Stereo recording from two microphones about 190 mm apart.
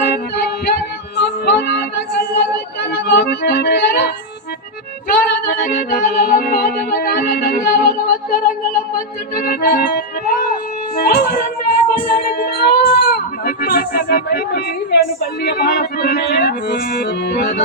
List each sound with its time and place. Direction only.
0.0 s music: 55° left (ahead or behind)
11.0 s a sound: 55° left (ahead or behind)
12.0 s goat: 55° left (ahead or behind)